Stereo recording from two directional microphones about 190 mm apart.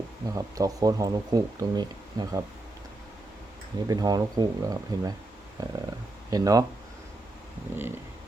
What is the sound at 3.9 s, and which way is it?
Speech, 20° right (ahead or behind).